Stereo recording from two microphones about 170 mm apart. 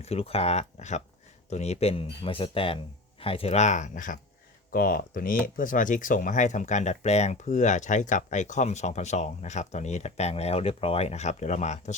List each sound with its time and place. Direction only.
0.0 s speech: 35° left (ahead or behind)